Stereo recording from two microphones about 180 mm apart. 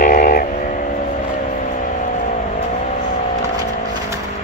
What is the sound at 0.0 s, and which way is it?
Vehicle, 50° left (ahead or behind).